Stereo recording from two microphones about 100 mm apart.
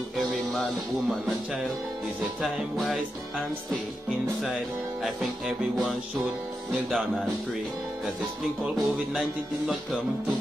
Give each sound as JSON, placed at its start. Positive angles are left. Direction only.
{"t": 0.2, "sound": "music", "side_deg": 0}
{"t": 2.4, "sound": "music", "side_deg": 0}
{"t": 8.6, "sound": "music", "side_deg": -5}